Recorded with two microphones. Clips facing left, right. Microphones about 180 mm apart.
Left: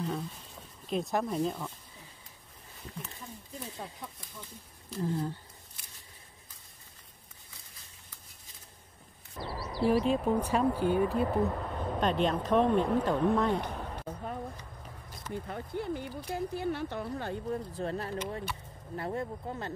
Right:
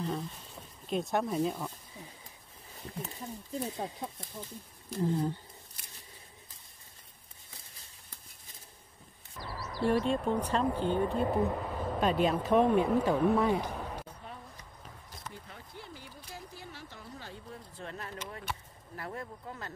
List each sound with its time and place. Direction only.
0.8 s speech: centre (ahead or behind)
3.5 s speech: 35° right (ahead or behind)
5.0 s speech: 20° right (ahead or behind)
9.5 s a sound: 35° left (ahead or behind)
9.8 s speech: 5° left (ahead or behind)
11.2 s speech: 5° right (ahead or behind)
14.0 s a sound: 55° left (ahead or behind)
15.3 s speech: 55° left (ahead or behind)
17.7 s speech: 35° left (ahead or behind)